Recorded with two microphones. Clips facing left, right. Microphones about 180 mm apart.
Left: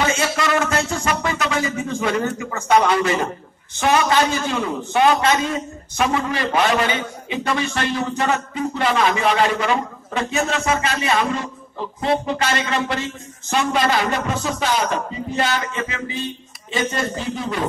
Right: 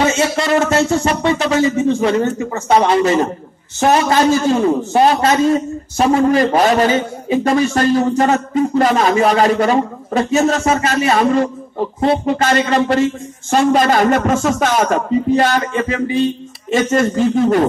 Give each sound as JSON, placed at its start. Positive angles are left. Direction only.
{"t": 0.0, "sound": "a man's voice", "side_deg": -30}
{"t": 16.7, "sound": "speech", "side_deg": -50}